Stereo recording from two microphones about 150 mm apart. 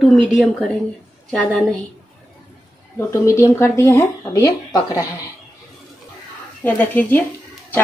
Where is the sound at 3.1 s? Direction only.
20° left (ahead or behind).